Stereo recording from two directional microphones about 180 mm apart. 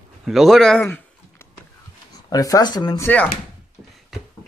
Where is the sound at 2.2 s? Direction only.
20° left (ahead or behind).